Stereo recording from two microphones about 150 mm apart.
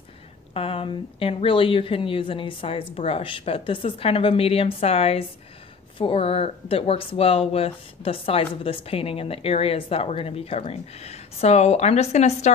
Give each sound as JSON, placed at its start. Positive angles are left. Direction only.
{"t": 0.6, "sound": "a woman's voice", "side_deg": 40}